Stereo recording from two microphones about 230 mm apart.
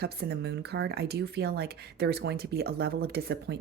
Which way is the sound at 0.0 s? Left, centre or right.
Right.